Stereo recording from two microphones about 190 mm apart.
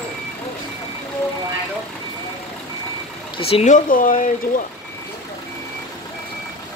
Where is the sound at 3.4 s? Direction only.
30° left (ahead or behind).